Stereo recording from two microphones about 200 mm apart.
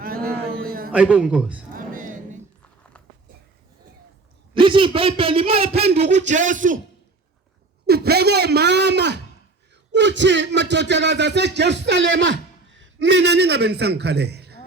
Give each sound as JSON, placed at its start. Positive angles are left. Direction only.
{"t": 0.0, "sound": "a sound", "side_deg": -50}
{"t": 0.9, "sound": "a man's voice", "side_deg": -5}
{"t": 1.7, "sound": "music", "side_deg": -45}
{"t": 4.5, "sound": "a man's voice", "side_deg": -25}
{"t": 7.9, "sound": "speech", "side_deg": -55}